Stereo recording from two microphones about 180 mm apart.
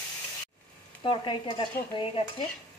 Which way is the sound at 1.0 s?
25° left (ahead or behind).